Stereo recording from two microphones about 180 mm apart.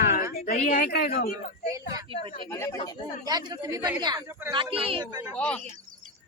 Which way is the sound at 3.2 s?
20° right (ahead or behind).